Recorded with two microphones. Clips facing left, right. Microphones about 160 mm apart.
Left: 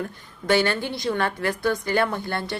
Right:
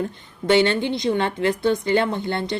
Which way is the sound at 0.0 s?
25° right (ahead or behind).